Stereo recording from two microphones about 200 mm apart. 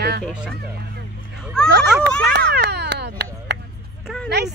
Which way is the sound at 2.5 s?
55° right (ahead or behind).